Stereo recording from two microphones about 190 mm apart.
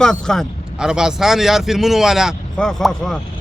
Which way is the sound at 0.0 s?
5° left (ahead or behind).